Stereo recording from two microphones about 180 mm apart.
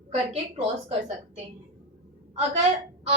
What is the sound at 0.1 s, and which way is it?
Speech, 35° right (ahead or behind).